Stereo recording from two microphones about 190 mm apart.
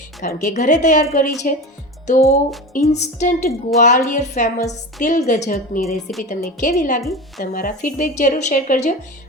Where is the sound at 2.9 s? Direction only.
40° left (ahead or behind).